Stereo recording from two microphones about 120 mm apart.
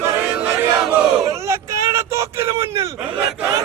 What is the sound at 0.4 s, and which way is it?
Battle cry, 25° right (ahead or behind).